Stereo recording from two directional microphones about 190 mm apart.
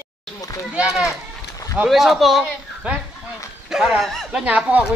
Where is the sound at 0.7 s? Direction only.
5° right (ahead or behind).